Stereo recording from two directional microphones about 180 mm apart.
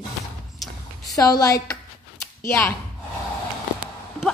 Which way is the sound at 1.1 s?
20° left (ahead or behind).